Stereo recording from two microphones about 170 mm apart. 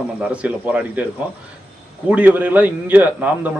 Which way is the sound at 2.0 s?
10° right (ahead or behind).